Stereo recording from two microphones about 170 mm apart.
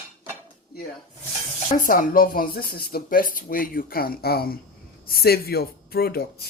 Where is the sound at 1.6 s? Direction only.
50° left (ahead or behind).